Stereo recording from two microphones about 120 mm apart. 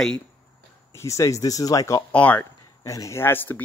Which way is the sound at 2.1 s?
10° left (ahead or behind).